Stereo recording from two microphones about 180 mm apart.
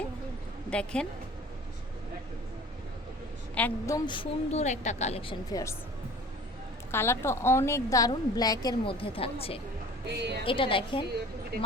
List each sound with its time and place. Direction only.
0.7 s a woman's voice: 5° left (ahead or behind)
3.5 s a woman's voice: 15° left (ahead or behind)
6.9 s a woman's voice: 15° left (ahead or behind); by 9.6 s 30° left (ahead or behind)
10.1 s a woman's voice: 75° right (ahead or behind)
10.4 s a woman's voice: 30° left (ahead or behind)